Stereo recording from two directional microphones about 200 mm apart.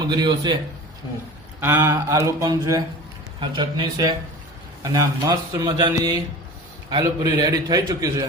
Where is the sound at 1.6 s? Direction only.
10° right (ahead or behind).